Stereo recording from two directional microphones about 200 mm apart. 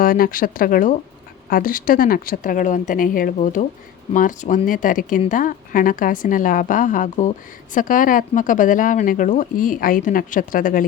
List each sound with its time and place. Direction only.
0.0 s a woman's voice: 45° left (ahead or behind)